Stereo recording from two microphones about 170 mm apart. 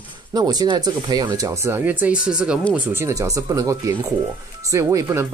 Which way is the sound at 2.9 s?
15° right (ahead or behind).